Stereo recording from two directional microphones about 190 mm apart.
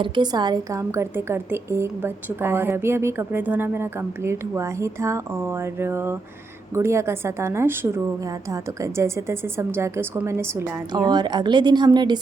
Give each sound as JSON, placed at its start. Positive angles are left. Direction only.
{"t": 0.0, "sound": "a woman's voice", "side_deg": -20}